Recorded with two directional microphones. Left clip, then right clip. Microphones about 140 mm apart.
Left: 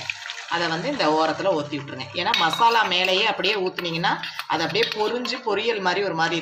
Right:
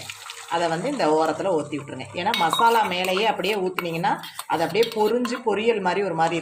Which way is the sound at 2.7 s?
45° right (ahead or behind).